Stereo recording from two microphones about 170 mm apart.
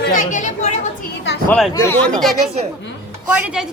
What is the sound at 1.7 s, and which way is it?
Speech, 15° left (ahead or behind).